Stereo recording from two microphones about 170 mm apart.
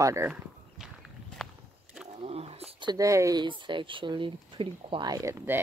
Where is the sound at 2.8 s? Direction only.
20° right (ahead or behind).